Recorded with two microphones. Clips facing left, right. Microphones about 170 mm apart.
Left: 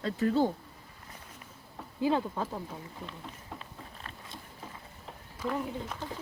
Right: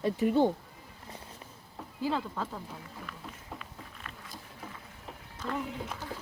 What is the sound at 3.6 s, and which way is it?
Boat, 30° left (ahead or behind).